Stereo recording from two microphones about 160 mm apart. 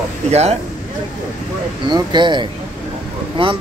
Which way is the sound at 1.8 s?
30° right (ahead or behind).